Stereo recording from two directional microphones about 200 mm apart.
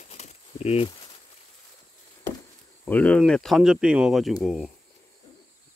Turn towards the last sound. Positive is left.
turn(degrees=0)  # may be behind; listen again after turning